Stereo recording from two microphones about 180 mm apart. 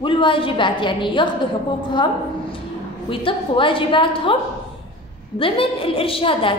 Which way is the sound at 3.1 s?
30° left (ahead or behind).